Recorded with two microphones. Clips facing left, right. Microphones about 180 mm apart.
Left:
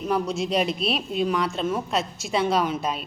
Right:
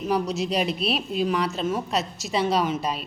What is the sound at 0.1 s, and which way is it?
Speech, centre (ahead or behind).